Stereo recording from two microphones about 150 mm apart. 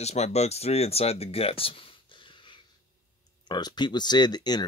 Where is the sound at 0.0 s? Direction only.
45° left (ahead or behind).